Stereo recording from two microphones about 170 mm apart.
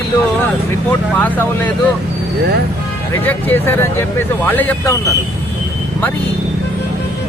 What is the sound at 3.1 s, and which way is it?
Speech, 15° left (ahead or behind).